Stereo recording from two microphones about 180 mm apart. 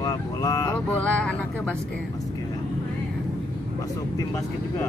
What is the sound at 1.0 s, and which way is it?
Speech, 5° left (ahead or behind).